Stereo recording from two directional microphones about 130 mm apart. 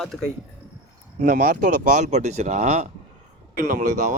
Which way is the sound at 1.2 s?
90° right.